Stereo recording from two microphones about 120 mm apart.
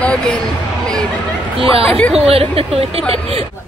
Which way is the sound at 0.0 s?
10° left (ahead or behind).